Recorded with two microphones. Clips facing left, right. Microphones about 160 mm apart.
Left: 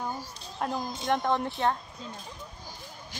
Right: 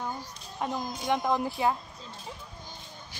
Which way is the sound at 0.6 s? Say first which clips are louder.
Left 1 dB; centre (ahead or behind).